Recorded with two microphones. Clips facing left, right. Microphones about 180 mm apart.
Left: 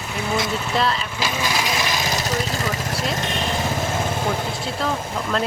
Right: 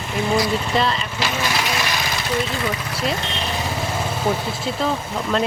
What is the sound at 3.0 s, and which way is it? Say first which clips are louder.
Speech: right 3 dB; 45° left (ahead or behind).